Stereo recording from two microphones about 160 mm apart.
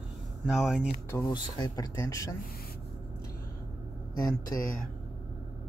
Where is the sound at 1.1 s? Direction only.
20° left (ahead or behind).